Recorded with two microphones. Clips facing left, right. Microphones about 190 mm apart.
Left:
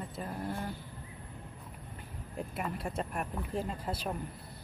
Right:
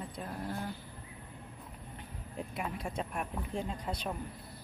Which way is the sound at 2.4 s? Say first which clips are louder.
Left 1 dB; centre (ahead or behind).